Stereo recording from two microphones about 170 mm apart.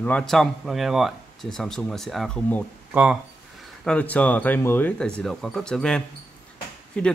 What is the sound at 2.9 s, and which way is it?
Speech, 5° right (ahead or behind).